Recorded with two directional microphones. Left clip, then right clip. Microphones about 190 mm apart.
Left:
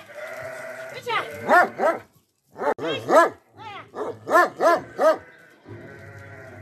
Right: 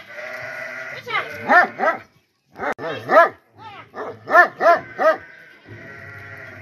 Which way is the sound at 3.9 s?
55° left (ahead or behind).